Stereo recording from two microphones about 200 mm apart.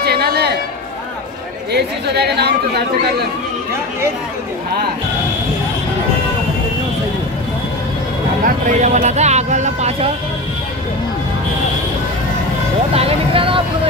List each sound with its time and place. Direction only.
0.0 s a sound: 55° right (ahead or behind)
1.7 s speech: 55° right (ahead or behind)
8.5 s speech: 40° right (ahead or behind)
12.9 s vehicle: 30° right (ahead or behind)